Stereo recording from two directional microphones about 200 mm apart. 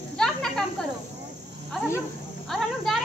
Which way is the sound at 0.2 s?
5° left (ahead or behind).